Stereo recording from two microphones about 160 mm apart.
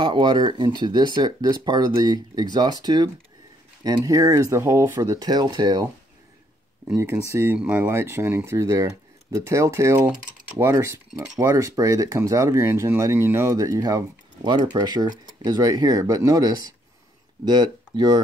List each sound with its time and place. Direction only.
0.0 s speech: 30° right (ahead or behind)
7.0 s speech: 15° right (ahead or behind)